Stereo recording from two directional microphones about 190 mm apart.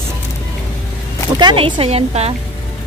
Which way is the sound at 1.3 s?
25° right (ahead or behind).